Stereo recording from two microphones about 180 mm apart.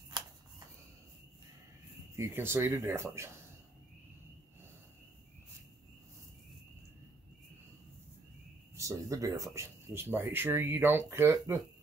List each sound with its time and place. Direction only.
2.1 s speech: 15° right (ahead or behind)
8.7 s speech: 20° right (ahead or behind)